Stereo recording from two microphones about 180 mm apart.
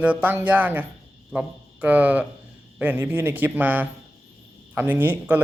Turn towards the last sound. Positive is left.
turn(degrees=-10)  # may be behind; listen again after turning